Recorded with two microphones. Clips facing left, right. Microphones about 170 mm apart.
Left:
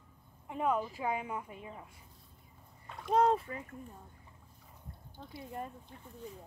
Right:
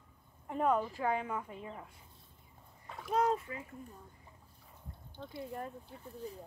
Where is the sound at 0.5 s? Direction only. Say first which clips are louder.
Right 1 dB; 5° left (ahead or behind).